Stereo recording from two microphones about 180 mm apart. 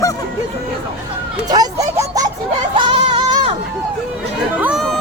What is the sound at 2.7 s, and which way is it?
Music, 25° right (ahead or behind).